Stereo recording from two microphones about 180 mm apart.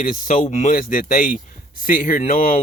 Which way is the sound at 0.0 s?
45° left (ahead or behind).